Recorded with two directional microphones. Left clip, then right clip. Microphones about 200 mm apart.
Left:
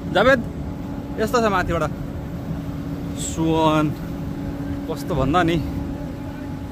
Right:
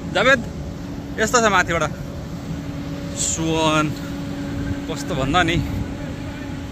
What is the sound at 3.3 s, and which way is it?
Speech, 20° left (ahead or behind).